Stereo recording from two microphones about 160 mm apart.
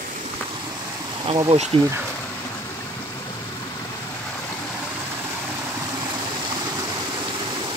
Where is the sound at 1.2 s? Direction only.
30° right (ahead or behind).